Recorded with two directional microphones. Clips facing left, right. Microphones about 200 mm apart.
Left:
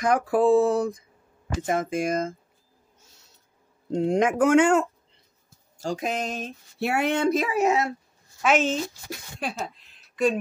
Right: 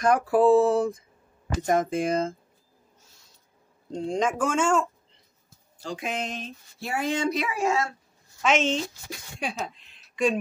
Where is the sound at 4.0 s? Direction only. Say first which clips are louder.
Left 5 dB; 60° left (ahead or behind).